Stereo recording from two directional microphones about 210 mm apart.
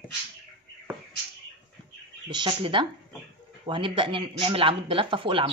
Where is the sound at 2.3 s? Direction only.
20° right (ahead or behind).